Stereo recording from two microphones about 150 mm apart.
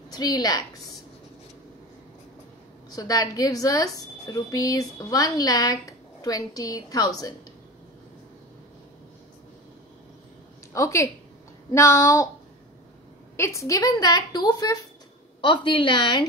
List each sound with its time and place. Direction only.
0.1 s a woman's voice: 25° left (ahead or behind)
2.9 s a woman's voice: 25° left (ahead or behind)
10.7 s a woman's voice: 20° left (ahead or behind)
13.4 s a woman's voice: 20° left (ahead or behind)